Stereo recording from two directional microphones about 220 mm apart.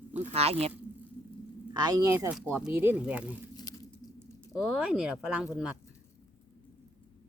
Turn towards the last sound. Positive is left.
turn(degrees=-5)  # may be behind; listen again after turning